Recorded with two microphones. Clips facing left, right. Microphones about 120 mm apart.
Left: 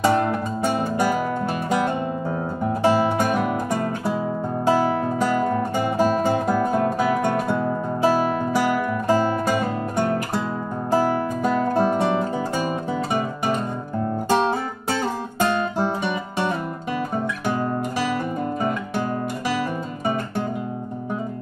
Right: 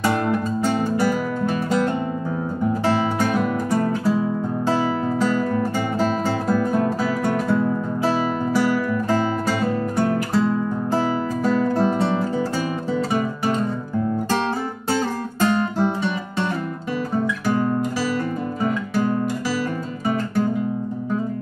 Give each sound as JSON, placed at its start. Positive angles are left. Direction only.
{"t": 0.7, "sound": "music", "side_deg": 15}
{"t": 2.8, "sound": "music", "side_deg": 15}
{"t": 5.2, "sound": "music", "side_deg": 15}
{"t": 8.5, "sound": "music", "side_deg": 15}
{"t": 11.4, "sound": "music", "side_deg": 15}